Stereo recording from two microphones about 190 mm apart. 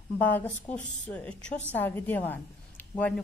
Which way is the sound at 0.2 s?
10° left (ahead or behind).